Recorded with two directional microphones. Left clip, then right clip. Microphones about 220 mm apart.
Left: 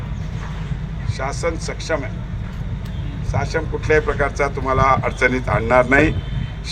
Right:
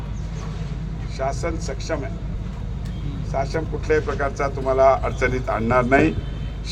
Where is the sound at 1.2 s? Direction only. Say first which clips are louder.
Left 2 dB; 35° left (ahead or behind).